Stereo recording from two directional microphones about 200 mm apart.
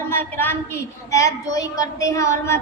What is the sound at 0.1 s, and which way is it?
A woman's voice, 10° left (ahead or behind).